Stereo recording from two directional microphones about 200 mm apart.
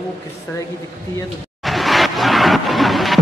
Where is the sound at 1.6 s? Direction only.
Centre (ahead or behind).